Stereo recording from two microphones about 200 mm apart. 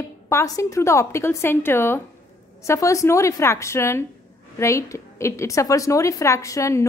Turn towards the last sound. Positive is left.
turn(degrees=15)  # may be behind; listen again after turning